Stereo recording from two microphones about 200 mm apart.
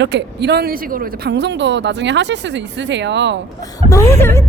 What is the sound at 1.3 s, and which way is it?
Speech, 60° right (ahead or behind).